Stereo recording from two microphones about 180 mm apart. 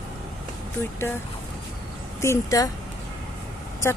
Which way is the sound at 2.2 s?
15° left (ahead or behind).